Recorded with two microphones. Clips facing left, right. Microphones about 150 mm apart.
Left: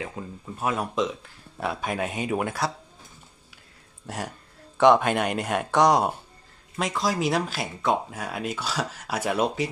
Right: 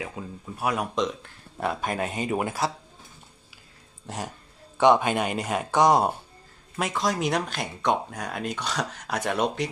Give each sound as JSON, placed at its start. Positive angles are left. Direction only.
{"t": 0.0, "sound": "speech", "side_deg": 0}
{"t": 4.7, "sound": "speech", "side_deg": 0}